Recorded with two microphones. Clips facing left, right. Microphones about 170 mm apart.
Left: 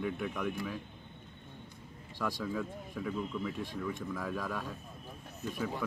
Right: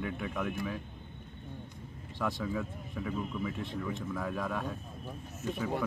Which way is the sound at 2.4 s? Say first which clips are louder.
Right 1 dB; centre (ahead or behind).